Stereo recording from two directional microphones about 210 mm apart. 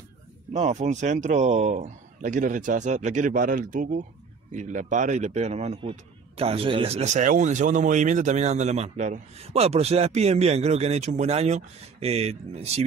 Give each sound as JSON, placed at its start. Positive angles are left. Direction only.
{"t": 0.5, "sound": "speech", "side_deg": -30}